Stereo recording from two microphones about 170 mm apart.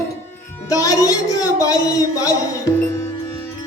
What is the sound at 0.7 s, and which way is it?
Speech, 20° left (ahead or behind).